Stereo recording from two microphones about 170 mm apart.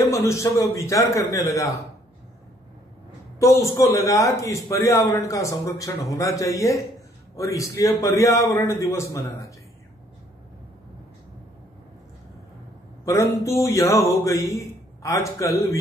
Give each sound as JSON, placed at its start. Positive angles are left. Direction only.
{"t": 0.0, "sound": "a man's voice", "side_deg": 15}
{"t": 3.3, "sound": "a man's voice", "side_deg": 15}
{"t": 13.0, "sound": "a man's voice", "side_deg": 20}